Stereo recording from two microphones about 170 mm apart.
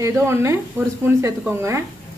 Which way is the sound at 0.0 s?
15° right (ahead or behind).